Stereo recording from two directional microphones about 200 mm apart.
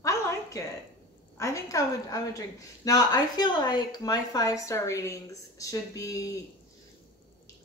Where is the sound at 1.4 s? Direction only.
15° left (ahead or behind).